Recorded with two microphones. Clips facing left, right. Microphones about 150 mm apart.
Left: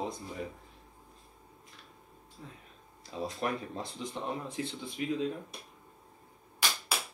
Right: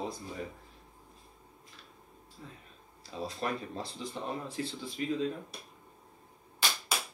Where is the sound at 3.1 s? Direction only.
15° left (ahead or behind).